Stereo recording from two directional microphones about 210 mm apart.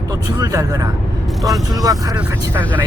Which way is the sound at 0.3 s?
15° right (ahead or behind).